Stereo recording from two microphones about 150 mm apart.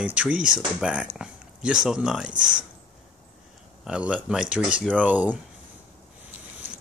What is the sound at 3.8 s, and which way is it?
Speech, 5° right (ahead or behind).